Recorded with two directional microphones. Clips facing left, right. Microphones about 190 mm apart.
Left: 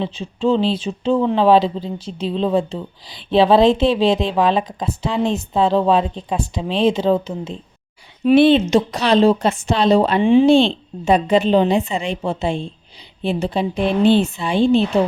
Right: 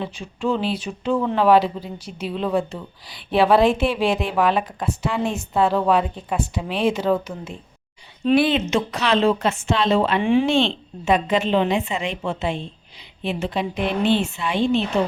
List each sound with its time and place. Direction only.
0.0 s a woman's voice: 20° left (ahead or behind)